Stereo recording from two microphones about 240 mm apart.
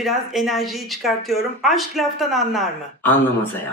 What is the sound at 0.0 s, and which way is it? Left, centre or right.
Speech, centre.